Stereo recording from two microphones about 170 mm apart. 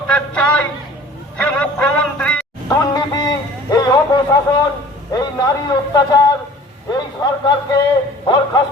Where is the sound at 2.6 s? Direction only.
25° left (ahead or behind).